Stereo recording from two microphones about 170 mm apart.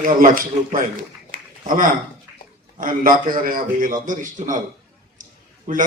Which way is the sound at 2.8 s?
55° right (ahead or behind).